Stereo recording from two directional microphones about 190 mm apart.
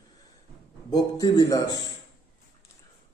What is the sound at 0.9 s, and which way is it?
Speech, 20° left (ahead or behind).